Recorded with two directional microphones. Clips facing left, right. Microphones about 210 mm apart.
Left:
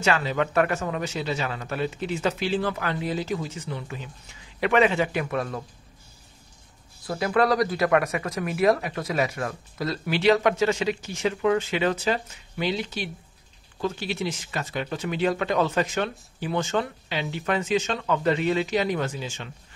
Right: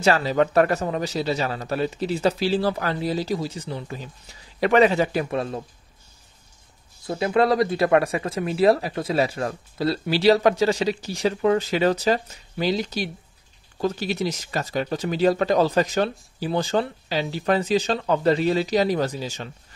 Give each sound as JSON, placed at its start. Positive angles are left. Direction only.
{"t": 0.0, "sound": "speech", "side_deg": -35}
{"t": 7.1, "sound": "speech", "side_deg": -25}